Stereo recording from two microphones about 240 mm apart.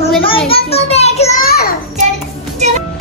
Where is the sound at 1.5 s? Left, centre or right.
Left.